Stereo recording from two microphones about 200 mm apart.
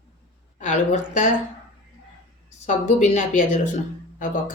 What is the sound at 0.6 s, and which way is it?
Speech, 35° left (ahead or behind).